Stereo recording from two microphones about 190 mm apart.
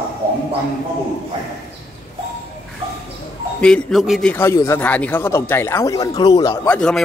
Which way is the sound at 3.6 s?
5° left (ahead or behind).